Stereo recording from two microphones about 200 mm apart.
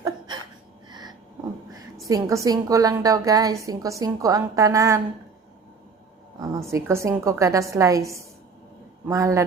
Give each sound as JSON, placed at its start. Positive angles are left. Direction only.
{"t": 0.9, "sound": "a sound", "side_deg": -20}
{"t": 2.0, "sound": "a woman's voice", "side_deg": -15}
{"t": 6.4, "sound": "a woman's voice", "side_deg": -15}